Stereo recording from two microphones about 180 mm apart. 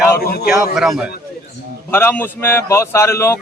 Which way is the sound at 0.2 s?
60° left (ahead or behind).